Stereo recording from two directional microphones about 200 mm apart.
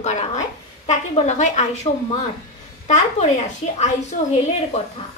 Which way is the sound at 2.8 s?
35° left (ahead or behind).